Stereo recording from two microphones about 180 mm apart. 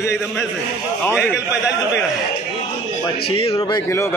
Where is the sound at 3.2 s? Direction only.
30° left (ahead or behind).